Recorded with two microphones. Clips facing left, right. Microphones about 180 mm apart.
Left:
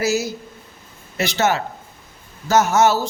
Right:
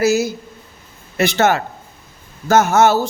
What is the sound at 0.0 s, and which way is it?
A man's voice, 50° right (ahead or behind).